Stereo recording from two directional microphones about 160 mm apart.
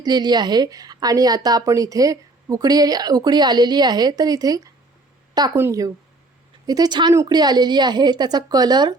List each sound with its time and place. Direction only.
0.0 s a woman's voice: 25° right (ahead or behind)